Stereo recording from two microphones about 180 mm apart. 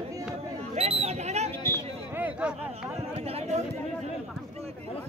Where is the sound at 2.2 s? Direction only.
5° right (ahead or behind).